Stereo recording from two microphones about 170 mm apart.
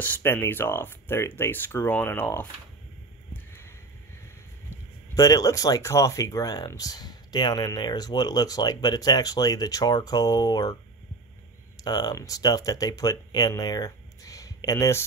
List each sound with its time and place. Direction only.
0.0 s speech: 10° left (ahead or behind)
5.1 s speech: 20° left (ahead or behind)